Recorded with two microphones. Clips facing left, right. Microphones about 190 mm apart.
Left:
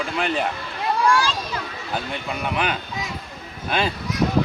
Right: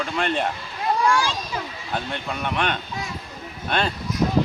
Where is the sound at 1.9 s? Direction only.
5° left (ahead or behind).